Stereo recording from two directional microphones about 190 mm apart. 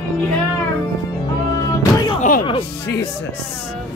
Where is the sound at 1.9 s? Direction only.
25° left (ahead or behind).